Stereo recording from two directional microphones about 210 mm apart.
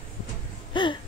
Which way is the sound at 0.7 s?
20° left (ahead or behind).